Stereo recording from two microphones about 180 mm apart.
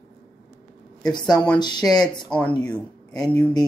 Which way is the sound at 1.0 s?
25° left (ahead or behind).